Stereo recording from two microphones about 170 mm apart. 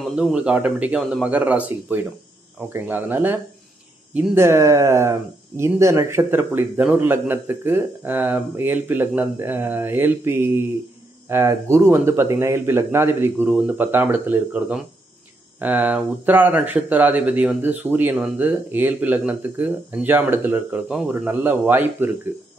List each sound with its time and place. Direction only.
0.0 s speech: 5° right (ahead or behind)